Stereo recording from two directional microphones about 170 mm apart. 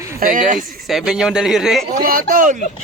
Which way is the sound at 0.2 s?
55° right (ahead or behind).